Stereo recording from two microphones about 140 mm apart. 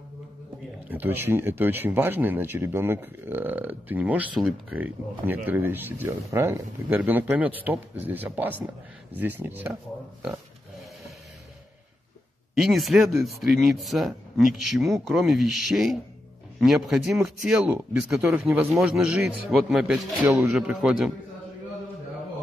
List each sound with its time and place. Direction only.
0.8 s speech: 15° right (ahead or behind)
12.5 s speech: centre (ahead or behind)